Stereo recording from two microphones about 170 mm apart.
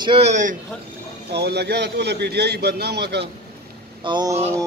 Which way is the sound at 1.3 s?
75° right (ahead or behind).